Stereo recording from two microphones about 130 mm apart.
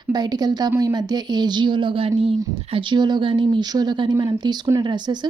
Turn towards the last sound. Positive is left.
turn(degrees=-35)  # may be behind; listen again after turning